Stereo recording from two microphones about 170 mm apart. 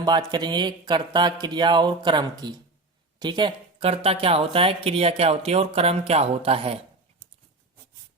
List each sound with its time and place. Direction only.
0.0 s speech: 25° right (ahead or behind)